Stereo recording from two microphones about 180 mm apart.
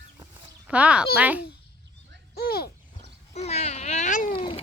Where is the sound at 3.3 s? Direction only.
35° left (ahead or behind).